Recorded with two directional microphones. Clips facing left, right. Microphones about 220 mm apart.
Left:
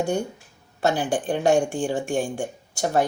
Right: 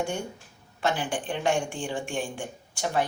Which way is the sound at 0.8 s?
40° left (ahead or behind).